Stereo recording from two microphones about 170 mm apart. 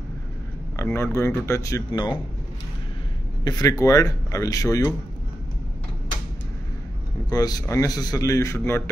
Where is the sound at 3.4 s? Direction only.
20° left (ahead or behind).